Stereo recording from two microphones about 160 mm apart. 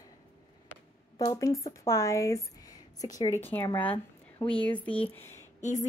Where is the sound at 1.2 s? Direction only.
25° left (ahead or behind).